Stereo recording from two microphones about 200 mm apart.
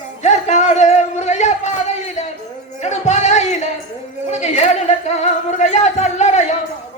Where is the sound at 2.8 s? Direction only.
35° left (ahead or behind).